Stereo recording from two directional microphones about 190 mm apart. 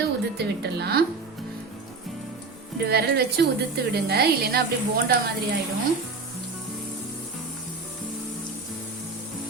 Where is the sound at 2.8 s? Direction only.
55° right (ahead or behind).